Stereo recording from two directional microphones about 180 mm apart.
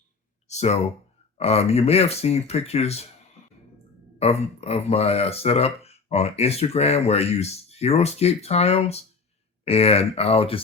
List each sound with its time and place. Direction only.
0.4 s speech: 35° left (ahead or behind)
4.2 s speech: 35° left (ahead or behind)